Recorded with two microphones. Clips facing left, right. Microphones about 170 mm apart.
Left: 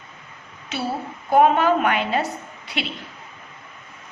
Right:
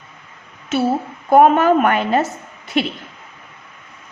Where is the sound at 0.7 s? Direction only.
50° right (ahead or behind).